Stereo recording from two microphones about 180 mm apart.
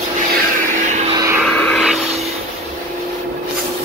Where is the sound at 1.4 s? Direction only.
5° left (ahead or behind).